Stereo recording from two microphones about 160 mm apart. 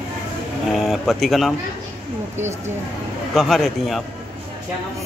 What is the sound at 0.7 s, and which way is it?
Speech, centre (ahead or behind).